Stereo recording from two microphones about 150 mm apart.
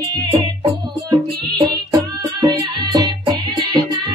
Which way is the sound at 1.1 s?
25° right (ahead or behind).